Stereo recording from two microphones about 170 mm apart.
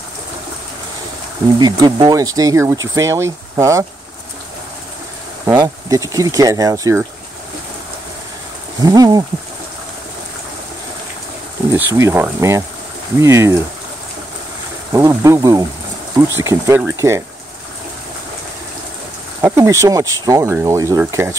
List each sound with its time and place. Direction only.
1.6 s speech: 25° right (ahead or behind)
5.6 s speech: 20° right (ahead or behind)
8.8 s speech: 20° right (ahead or behind)
11.7 s speech: 15° right (ahead or behind)
14.9 s speech: 15° right (ahead or behind)
19.4 s speech: 15° right (ahead or behind)